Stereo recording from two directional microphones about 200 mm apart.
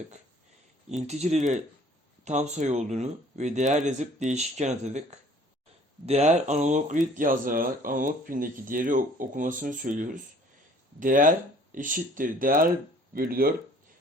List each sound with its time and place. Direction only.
1.0 s speech: 35° right (ahead or behind)